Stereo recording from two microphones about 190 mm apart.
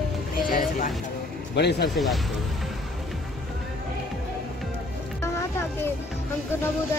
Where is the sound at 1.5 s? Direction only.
60° left (ahead or behind).